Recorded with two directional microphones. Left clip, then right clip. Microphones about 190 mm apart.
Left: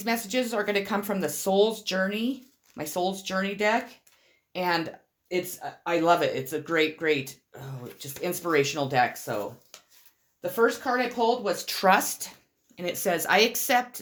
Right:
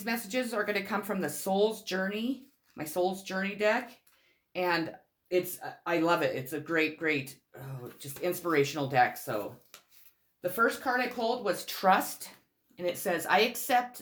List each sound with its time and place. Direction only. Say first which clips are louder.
0.0 s speech: left 5 dB; 30° left (ahead or behind)
10.5 s speech: left 4 dB; 20° left (ahead or behind)